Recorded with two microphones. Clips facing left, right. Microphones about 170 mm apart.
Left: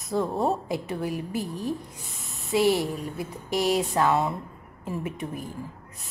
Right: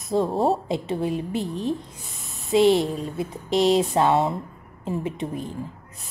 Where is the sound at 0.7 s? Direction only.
25° right (ahead or behind).